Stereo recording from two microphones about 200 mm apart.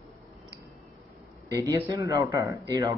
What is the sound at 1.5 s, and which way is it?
A man's voice, 15° right (ahead or behind).